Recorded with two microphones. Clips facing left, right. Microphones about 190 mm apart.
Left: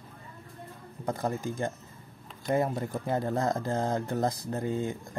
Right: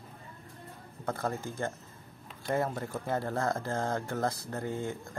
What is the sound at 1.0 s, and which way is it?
Speech, 15° left (ahead or behind).